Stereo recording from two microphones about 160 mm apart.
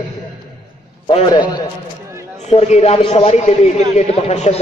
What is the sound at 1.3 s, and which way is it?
Speech, 25° left (ahead or behind).